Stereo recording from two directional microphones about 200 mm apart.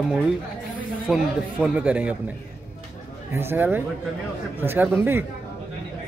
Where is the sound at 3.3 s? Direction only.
10° right (ahead or behind).